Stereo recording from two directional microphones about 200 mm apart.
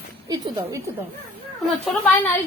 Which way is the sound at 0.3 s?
20° right (ahead or behind).